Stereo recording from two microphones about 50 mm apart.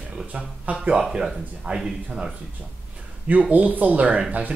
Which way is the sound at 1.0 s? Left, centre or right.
Centre.